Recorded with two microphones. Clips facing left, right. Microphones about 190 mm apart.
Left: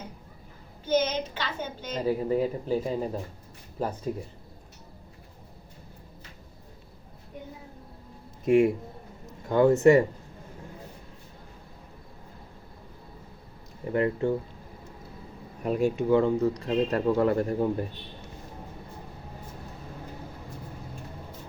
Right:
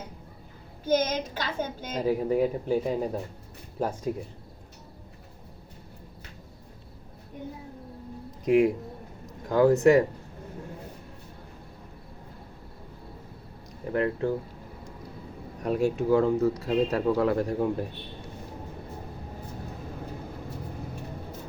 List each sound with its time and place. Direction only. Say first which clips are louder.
0.9 s a woman's voice: left 1 dB; 45° right (ahead or behind)
2.0 s speech: right 1 dB; 10° right (ahead or behind)
8.4 s speech: even; centre (ahead or behind)
13.8 s speech: left 1 dB; centre (ahead or behind)
15.6 s speech: even; centre (ahead or behind)